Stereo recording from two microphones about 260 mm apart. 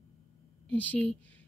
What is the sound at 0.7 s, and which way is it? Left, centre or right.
Speech, centre.